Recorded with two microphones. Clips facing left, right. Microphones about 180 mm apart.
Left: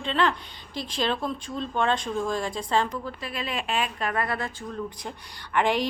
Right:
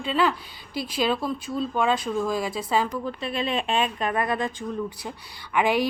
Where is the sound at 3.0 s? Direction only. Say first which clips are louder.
Right 5 dB; 25° right (ahead or behind); by 5.8 s 10° right (ahead or behind).